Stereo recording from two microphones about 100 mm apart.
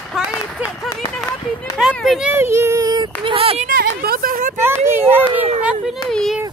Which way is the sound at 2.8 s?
45° right (ahead or behind).